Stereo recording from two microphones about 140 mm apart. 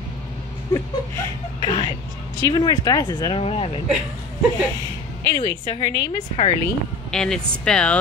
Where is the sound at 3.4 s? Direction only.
40° left (ahead or behind).